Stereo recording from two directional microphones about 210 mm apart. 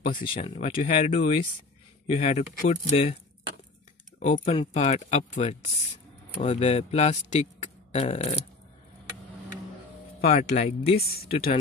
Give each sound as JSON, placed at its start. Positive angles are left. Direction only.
{"t": 0.3, "sound": "a man's voice", "side_deg": 30}
{"t": 4.2, "sound": "a man's voice", "side_deg": 30}
{"t": 10.2, "sound": "a man's voice", "side_deg": 30}